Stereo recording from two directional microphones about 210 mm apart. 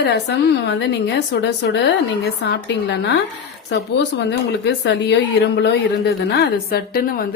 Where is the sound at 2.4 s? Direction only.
55° left (ahead or behind).